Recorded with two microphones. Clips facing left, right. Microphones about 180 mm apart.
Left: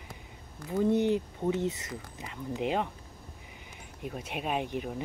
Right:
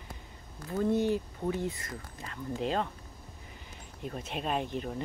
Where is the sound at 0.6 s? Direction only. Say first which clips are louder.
Left 2 dB; 15° left (ahead or behind).